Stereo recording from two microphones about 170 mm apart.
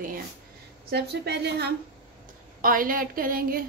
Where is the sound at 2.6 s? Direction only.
55° right (ahead or behind).